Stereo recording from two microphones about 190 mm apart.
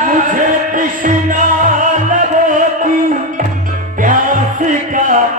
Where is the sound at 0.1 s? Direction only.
45° right (ahead or behind).